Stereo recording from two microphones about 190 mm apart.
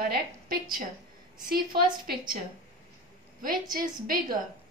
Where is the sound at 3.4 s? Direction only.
45° right (ahead or behind).